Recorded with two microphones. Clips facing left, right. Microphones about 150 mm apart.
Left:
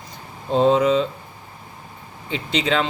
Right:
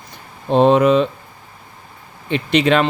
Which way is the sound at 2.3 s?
65° right (ahead or behind).